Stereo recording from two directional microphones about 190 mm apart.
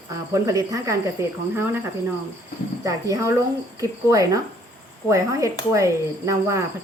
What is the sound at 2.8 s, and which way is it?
Speech, 15° right (ahead or behind).